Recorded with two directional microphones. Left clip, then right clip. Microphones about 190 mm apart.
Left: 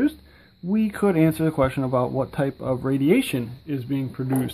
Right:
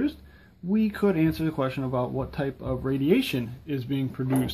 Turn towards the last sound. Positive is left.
turn(degrees=30)  # may be behind; listen again after turning